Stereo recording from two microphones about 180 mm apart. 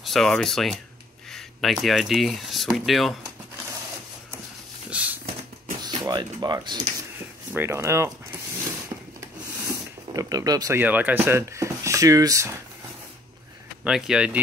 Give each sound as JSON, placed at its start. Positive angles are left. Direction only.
{"t": 0.0, "sound": "speech", "side_deg": 0}
{"t": 4.8, "sound": "a sound", "side_deg": -10}
{"t": 5.9, "sound": "speech", "side_deg": -25}
{"t": 7.5, "sound": "speech", "side_deg": -15}
{"t": 10.1, "sound": "speech", "side_deg": -20}
{"t": 13.8, "sound": "speech", "side_deg": -5}